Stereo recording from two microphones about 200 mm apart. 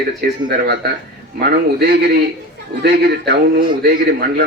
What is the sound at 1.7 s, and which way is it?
A man's voice, 55° right (ahead or behind).